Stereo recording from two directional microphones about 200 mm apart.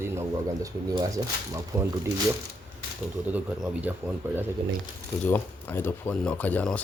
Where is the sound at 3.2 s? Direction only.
10° right (ahead or behind).